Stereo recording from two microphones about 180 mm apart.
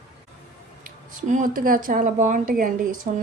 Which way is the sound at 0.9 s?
45° right (ahead or behind).